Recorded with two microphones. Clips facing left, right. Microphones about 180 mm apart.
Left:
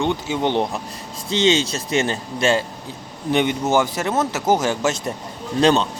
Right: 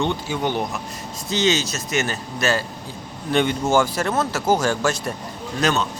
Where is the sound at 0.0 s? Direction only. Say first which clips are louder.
Left 2 dB; 20° left (ahead or behind).